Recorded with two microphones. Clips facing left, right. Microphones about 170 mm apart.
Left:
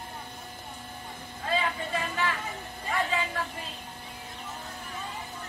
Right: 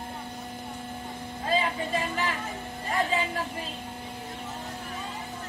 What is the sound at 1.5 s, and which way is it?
Music, 25° right (ahead or behind).